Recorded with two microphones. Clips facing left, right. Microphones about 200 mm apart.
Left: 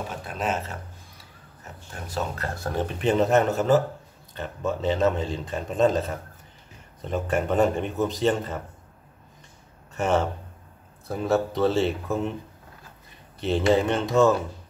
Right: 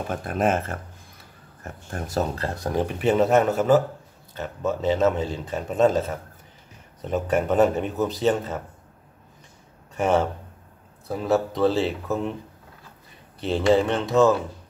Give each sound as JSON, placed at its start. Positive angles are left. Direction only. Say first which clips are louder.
{"t": 0.1, "sound": "speech", "louder": "right 8 dB", "side_deg": -50}
{"t": 2.3, "sound": "a man's voice", "louder": "right 3 dB", "side_deg": -25}
{"t": 9.9, "sound": "speech", "louder": "right 2 dB", "side_deg": -10}
{"t": 13.7, "sound": "speech", "louder": "right 1 dB", "side_deg": 0}